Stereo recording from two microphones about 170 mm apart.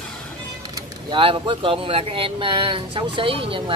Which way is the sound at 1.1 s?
30° right (ahead or behind).